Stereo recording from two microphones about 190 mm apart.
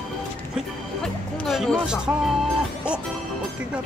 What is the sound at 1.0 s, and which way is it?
Music, centre (ahead or behind).